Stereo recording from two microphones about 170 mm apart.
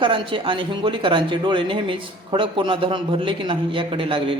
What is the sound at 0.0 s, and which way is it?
Speech, 30° right (ahead or behind).